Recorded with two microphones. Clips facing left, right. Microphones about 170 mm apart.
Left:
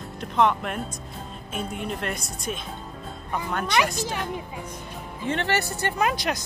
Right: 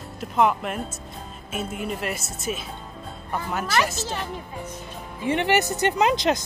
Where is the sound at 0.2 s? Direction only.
5° right (ahead or behind).